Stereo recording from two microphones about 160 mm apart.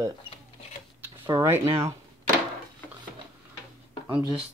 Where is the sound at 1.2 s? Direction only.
15° right (ahead or behind).